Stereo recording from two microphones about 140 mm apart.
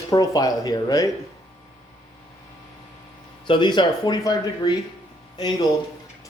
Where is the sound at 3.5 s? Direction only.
35° left (ahead or behind).